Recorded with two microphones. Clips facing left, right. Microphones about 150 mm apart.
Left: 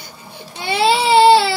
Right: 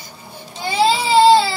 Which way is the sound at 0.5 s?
70° left (ahead or behind).